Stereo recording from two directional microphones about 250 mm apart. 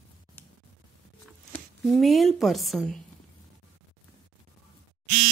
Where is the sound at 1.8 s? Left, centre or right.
Centre.